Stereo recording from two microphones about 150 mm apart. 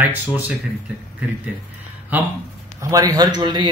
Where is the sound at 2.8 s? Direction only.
20° right (ahead or behind).